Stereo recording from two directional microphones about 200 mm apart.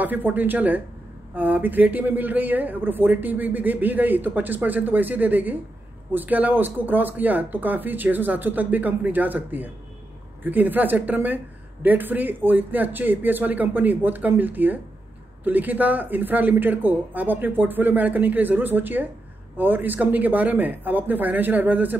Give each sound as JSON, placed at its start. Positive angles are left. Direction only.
{"t": 0.0, "sound": "a woman's voice", "side_deg": -10}